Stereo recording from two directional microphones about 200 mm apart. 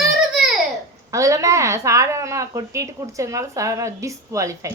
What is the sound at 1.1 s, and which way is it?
Speech, 15° right (ahead or behind).